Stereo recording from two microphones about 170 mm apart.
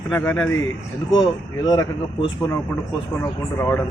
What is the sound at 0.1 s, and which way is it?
Speech, 10° left (ahead or behind).